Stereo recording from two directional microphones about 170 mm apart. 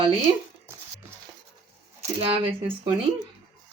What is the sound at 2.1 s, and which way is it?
Speech, 35° right (ahead or behind).